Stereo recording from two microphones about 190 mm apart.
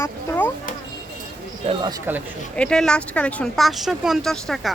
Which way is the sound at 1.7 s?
25° right (ahead or behind).